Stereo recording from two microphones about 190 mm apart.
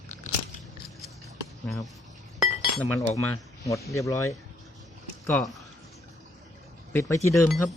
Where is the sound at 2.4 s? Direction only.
Centre (ahead or behind).